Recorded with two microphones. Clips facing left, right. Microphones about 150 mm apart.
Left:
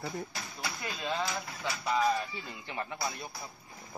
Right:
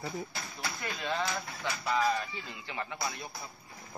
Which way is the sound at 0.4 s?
10° left (ahead or behind).